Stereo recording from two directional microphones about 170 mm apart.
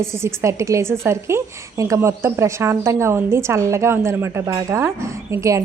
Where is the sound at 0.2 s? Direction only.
15° right (ahead or behind).